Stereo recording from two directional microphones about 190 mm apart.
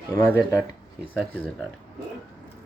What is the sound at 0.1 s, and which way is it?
Speech, 15° left (ahead or behind).